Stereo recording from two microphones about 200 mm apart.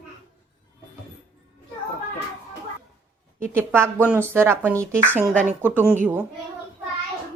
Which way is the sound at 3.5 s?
10° right (ahead or behind).